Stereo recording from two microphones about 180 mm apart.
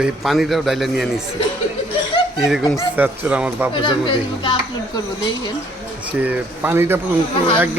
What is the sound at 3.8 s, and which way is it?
Speech, 25° left (ahead or behind).